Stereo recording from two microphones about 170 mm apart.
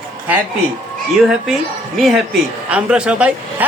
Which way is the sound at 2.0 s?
Centre (ahead or behind).